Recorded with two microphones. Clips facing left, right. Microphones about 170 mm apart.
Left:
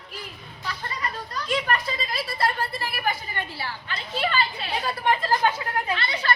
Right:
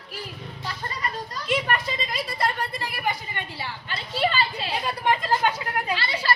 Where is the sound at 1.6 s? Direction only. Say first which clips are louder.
Even; 20° right (ahead or behind).